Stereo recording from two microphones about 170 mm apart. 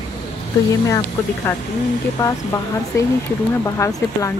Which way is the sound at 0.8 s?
20° left (ahead or behind).